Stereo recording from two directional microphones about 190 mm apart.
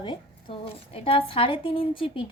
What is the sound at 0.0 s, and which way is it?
Speech, 25° left (ahead or behind).